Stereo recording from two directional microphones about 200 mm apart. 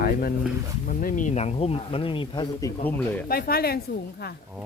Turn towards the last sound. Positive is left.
turn(degrees=50)  # may be behind; listen again after turning